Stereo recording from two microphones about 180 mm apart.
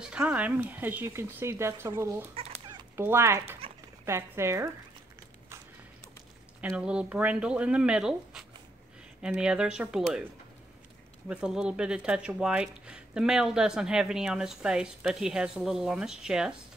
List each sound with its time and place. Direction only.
0.0 s speech: 5° right (ahead or behind)
2.3 s cat: 35° right (ahead or behind)
3.0 s speech: 15° right (ahead or behind)
6.7 s speech: 5° right (ahead or behind)
11.2 s speech: 5° right (ahead or behind)